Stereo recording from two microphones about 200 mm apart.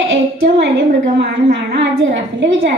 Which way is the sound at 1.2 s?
60° right (ahead or behind).